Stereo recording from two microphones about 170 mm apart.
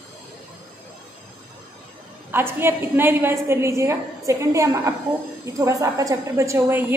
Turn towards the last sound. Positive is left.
turn(degrees=-15)  # may be behind; listen again after turning